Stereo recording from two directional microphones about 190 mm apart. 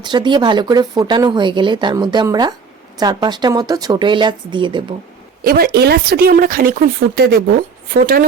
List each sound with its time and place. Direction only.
0.0 s speech: 25° right (ahead or behind)
5.4 s speech: 55° right (ahead or behind)